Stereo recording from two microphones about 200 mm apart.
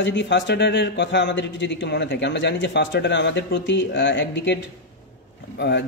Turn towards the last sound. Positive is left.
turn(degrees=60)  # may be behind; listen again after turning